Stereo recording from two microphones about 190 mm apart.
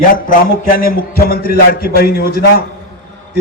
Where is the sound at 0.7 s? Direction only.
50° left (ahead or behind).